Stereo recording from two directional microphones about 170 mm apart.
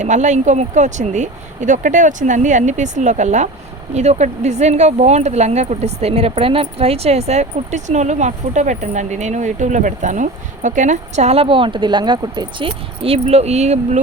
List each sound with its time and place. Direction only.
0.0 s speech: 45° right (ahead or behind)